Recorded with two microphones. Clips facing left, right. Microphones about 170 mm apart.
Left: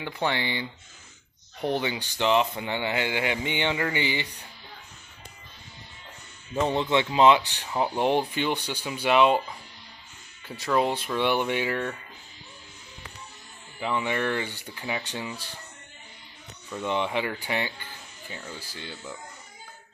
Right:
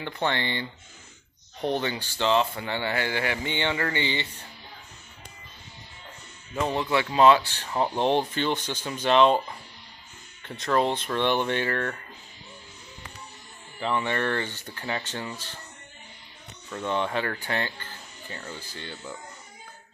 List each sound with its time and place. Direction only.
0.0 s speech: 10° left (ahead or behind)
6.7 s speech: 25° left (ahead or behind)
10.4 s speech: 5° left (ahead or behind)
13.7 s speech: 10° left (ahead or behind)
16.7 s speech: 15° left (ahead or behind)
18.3 s speech: 5° left (ahead or behind)